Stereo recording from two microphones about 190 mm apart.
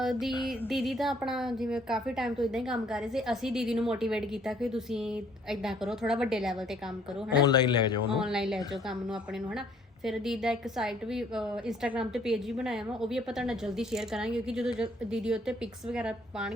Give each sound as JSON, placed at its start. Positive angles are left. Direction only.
{"t": 0.0, "sound": "music", "side_deg": 0}
{"t": 0.7, "sound": "a woman's voice", "side_deg": 0}
{"t": 7.4, "sound": "a man's voice", "side_deg": 20}
{"t": 8.2, "sound": "a woman's voice", "side_deg": 0}